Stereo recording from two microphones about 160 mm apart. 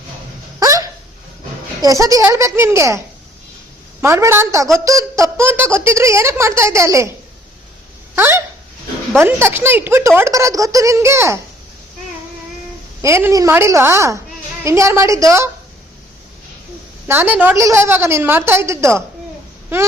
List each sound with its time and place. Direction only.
0.6 s a sound: 20° right (ahead or behind)
1.8 s a woman's voice: 20° right (ahead or behind)
4.0 s speech: 15° right (ahead or behind)
8.1 s a woman's voice: 15° right (ahead or behind)
13.0 s a woman's voice: 15° right (ahead or behind)
17.1 s speech: 10° right (ahead or behind)